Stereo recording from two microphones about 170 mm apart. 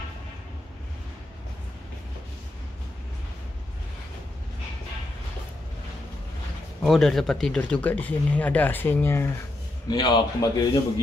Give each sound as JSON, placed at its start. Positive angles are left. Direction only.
{"t": 6.8, "sound": "speech", "side_deg": 0}
{"t": 9.8, "sound": "a man's voice", "side_deg": 25}